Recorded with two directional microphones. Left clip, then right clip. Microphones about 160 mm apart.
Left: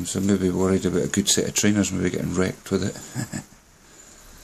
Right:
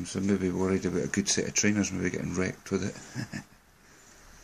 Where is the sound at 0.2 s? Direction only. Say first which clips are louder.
Left 6 dB; 5° left (ahead or behind).